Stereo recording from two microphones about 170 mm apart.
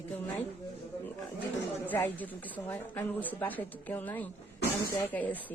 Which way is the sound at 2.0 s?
10° left (ahead or behind).